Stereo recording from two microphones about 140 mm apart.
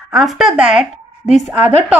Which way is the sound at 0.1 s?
Centre (ahead or behind).